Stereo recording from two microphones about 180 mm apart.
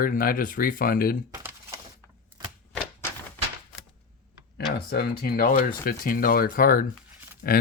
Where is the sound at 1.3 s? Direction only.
10° right (ahead or behind).